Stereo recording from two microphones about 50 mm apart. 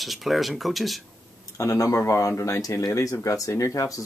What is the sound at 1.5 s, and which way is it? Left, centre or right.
Speech, left.